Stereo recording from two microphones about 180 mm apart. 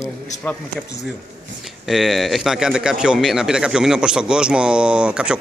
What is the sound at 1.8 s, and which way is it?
A man's voice, centre (ahead or behind).